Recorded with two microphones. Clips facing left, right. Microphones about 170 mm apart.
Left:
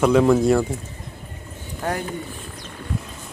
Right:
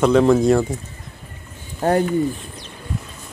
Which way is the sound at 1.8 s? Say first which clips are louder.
Right 8 dB; 40° right (ahead or behind).